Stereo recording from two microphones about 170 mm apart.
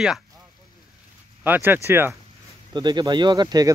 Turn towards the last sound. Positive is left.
turn(degrees=-25)  # may be behind; listen again after turning